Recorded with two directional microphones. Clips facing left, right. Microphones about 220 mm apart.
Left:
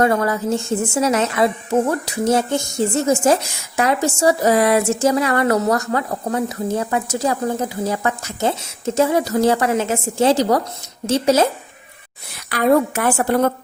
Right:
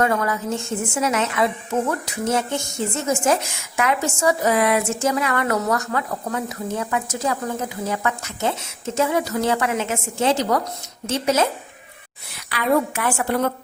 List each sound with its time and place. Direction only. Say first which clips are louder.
0.0 s speech: left 4 dB; 35° left (ahead or behind)
12.5 s a woman's voice: left 5 dB; 45° left (ahead or behind)